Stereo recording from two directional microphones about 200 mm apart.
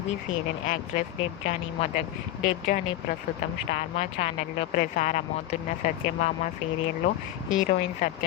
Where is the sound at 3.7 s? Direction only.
30° left (ahead or behind).